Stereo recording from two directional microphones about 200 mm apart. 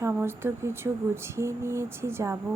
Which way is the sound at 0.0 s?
10° right (ahead or behind).